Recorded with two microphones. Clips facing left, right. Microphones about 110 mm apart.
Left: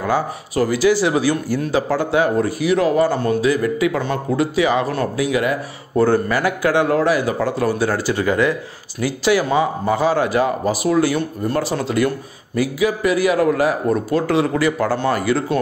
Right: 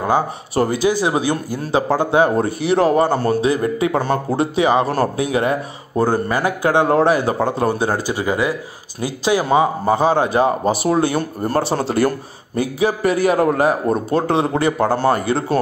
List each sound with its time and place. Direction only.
0.0 s speech: 30° right (ahead or behind)
5.9 s speech: 20° right (ahead or behind)
11.1 s speech: 40° right (ahead or behind)